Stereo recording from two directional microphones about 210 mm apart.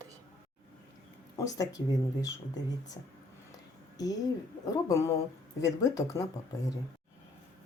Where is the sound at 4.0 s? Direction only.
15° left (ahead or behind).